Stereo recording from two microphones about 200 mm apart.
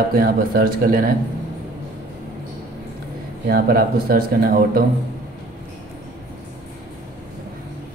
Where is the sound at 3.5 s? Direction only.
50° right (ahead or behind).